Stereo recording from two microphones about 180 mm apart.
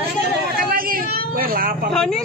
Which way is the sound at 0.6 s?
55° right (ahead or behind).